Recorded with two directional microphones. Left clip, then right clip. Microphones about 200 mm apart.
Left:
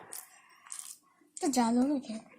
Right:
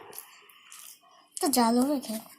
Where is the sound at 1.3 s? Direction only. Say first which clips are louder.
Right 5 dB; 10° right (ahead or behind).